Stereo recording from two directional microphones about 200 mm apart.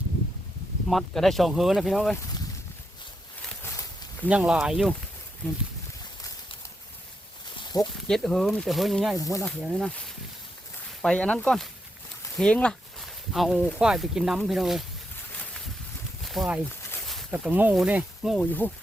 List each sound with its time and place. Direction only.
0.9 s speech: centre (ahead or behind)
3.4 s a sound: 10° left (ahead or behind)
4.3 s speech: 5° right (ahead or behind)
7.5 s a sound: 20° left (ahead or behind)
8.0 s speech: centre (ahead or behind)
11.0 s speech: 5° left (ahead or behind)
16.2 s speech: centre (ahead or behind)